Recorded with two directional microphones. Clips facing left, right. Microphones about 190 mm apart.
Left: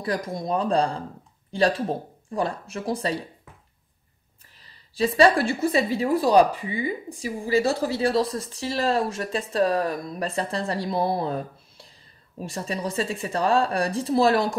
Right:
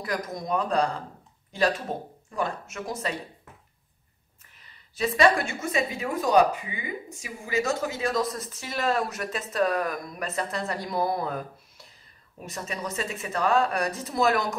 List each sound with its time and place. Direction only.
0.0 s speech: 30° left (ahead or behind)
4.6 s speech: 30° left (ahead or behind)